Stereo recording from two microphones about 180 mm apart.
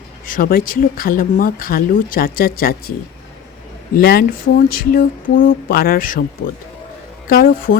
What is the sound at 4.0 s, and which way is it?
Speech, 55° left (ahead or behind).